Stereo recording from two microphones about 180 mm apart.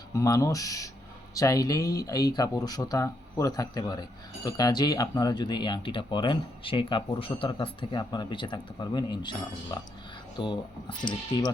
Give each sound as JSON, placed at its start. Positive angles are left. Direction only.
{"t": 0.1, "sound": "speech", "side_deg": 20}